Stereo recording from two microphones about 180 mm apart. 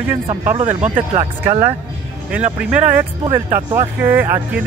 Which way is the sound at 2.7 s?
10° right (ahead or behind).